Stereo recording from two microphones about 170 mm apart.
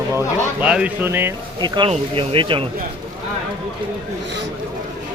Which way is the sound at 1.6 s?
25° right (ahead or behind).